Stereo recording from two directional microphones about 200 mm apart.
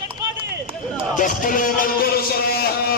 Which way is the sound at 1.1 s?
40° left (ahead or behind).